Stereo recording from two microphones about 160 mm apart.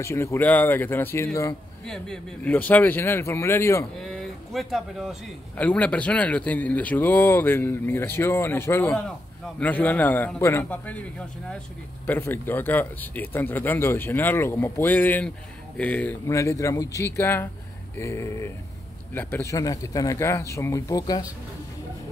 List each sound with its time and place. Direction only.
0.0 s speech: 15° left (ahead or behind)
1.9 s speech: 5° left (ahead or behind)
4.0 s speech: 5° left (ahead or behind); by 21.3 s 20° left (ahead or behind)